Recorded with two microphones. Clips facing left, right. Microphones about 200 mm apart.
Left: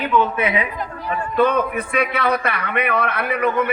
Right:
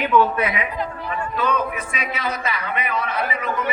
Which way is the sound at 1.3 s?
55° left (ahead or behind).